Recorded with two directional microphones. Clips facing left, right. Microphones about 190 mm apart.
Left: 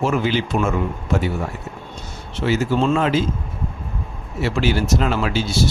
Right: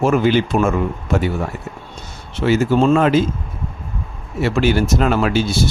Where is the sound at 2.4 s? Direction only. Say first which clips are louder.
Right 4 dB; 55° right (ahead or behind).